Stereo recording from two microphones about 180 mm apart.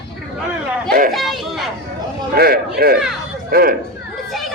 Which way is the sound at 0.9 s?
55° right (ahead or behind).